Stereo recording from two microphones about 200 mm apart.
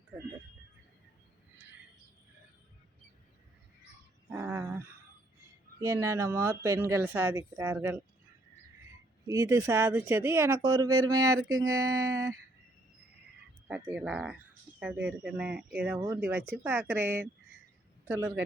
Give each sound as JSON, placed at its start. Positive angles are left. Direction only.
{"t": 4.3, "sound": "a sound", "side_deg": -15}
{"t": 5.8, "sound": "speech", "side_deg": -15}
{"t": 9.2, "sound": "speech", "side_deg": -15}
{"t": 13.7, "sound": "a man's voice", "side_deg": -10}